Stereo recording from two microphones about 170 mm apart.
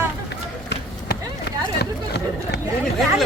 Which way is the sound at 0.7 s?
75° left (ahead or behind).